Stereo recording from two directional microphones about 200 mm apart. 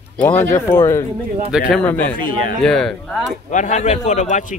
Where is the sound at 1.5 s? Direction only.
5° right (ahead or behind).